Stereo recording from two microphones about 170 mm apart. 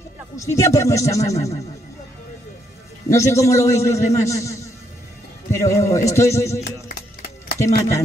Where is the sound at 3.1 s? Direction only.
15° left (ahead or behind).